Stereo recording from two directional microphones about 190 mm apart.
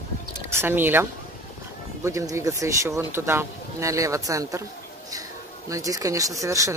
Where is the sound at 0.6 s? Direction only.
10° right (ahead or behind).